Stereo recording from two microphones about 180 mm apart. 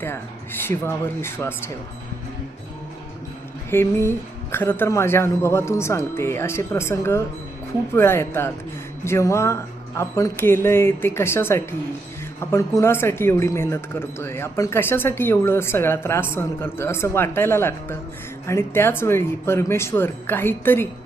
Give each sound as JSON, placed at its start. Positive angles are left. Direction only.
{"t": 0.7, "sound": "speech", "side_deg": 15}
{"t": 3.7, "sound": "speech", "side_deg": 15}